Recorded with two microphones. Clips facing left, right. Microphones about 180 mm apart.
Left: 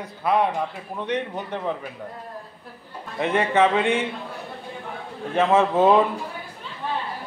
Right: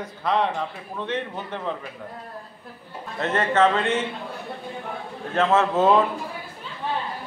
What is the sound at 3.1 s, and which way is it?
Speech, 10° left (ahead or behind).